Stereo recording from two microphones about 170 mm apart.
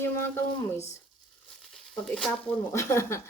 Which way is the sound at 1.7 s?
Centre (ahead or behind).